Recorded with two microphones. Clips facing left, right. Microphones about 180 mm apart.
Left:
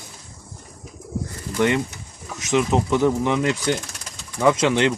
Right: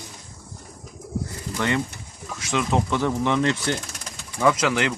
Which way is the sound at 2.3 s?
20° left (ahead or behind).